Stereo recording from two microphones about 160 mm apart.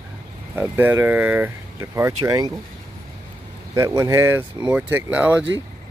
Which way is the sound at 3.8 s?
20° right (ahead or behind).